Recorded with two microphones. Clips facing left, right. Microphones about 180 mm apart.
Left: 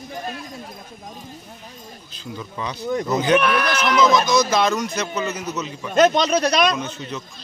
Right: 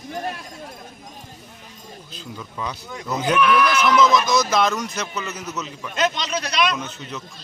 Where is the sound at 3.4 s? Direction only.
60° left (ahead or behind).